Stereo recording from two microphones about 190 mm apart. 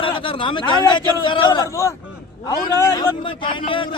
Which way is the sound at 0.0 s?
25° left (ahead or behind).